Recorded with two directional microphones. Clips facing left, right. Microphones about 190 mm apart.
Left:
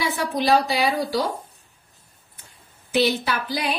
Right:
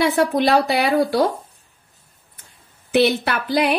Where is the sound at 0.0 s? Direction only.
60° right (ahead or behind).